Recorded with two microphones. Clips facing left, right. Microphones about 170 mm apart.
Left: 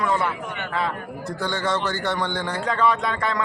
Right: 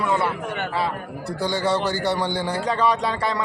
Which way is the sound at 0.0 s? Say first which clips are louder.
Right 1 dB; 5° right (ahead or behind).